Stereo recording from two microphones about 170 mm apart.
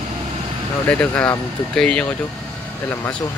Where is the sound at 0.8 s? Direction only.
5° left (ahead or behind).